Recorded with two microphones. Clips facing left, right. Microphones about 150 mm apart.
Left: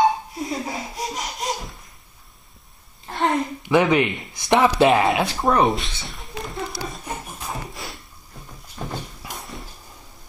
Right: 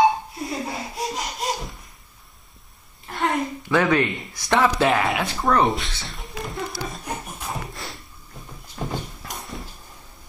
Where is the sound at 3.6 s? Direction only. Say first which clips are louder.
Left 2 dB; 20° left (ahead or behind).